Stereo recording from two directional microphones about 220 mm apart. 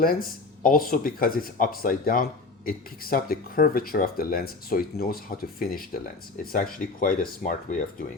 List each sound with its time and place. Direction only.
0.0 s speech: 40° left (ahead or behind)